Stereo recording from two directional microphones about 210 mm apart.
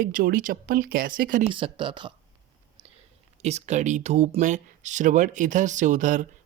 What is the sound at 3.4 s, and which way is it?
Speech, 30° right (ahead or behind).